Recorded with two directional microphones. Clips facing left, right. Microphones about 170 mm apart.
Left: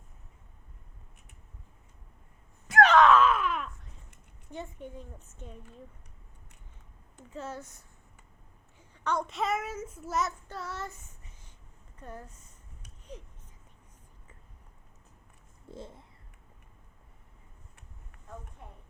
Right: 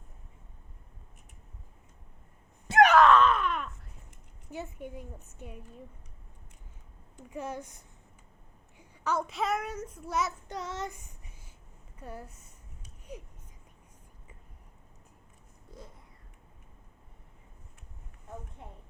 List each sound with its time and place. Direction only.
2.8 s a sound: 5° right (ahead or behind)
4.5 s a woman's voice: 10° right (ahead or behind)
7.2 s a woman's voice: 15° right (ahead or behind)
8.8 s a child's voice: 5° right (ahead or behind)
10.5 s a woman's voice: 20° right (ahead or behind)
15.7 s a sound: 25° left (ahead or behind)